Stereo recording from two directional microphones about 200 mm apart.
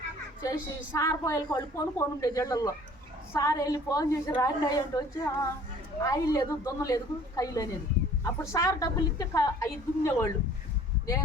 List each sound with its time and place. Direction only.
0.9 s a woman's voice: 15° left (ahead or behind)